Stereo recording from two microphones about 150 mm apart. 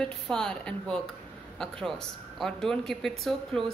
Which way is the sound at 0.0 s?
5° left (ahead or behind).